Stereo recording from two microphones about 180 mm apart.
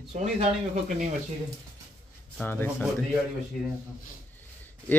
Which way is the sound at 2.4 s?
10° left (ahead or behind).